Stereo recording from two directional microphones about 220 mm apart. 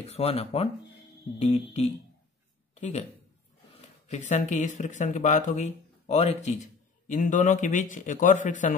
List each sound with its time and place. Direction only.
0.0 s speech: 30° left (ahead or behind)
2.7 s a sound: 30° left (ahead or behind)
4.1 s speech: 35° left (ahead or behind)